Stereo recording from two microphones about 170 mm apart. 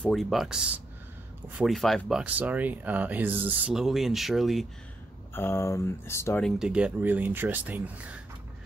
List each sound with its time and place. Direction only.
0.0 s speech: centre (ahead or behind)
5.3 s speech: 15° left (ahead or behind)
6.4 s speech: 5° right (ahead or behind)